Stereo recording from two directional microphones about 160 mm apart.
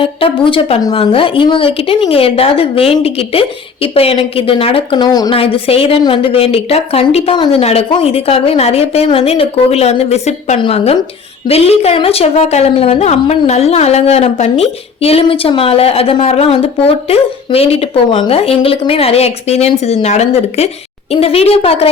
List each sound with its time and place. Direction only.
0.0 s a woman's voice: 35° left (ahead or behind)
5.4 s a woman's voice: 35° left (ahead or behind)
7.3 s a woman's voice: 30° left (ahead or behind)
7.6 s a woman's voice: 40° left (ahead or behind)